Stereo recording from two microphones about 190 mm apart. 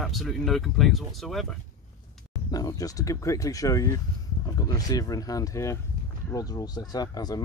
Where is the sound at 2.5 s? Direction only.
20° left (ahead or behind).